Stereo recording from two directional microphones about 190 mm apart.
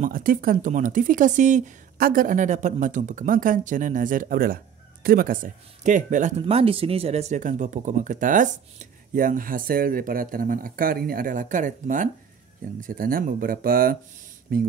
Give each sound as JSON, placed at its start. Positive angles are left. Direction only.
{"t": 0.0, "sound": "speech", "side_deg": -45}
{"t": 6.4, "sound": "speech", "side_deg": -30}